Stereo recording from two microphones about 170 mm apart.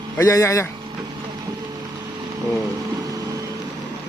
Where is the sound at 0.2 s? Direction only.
20° left (ahead or behind).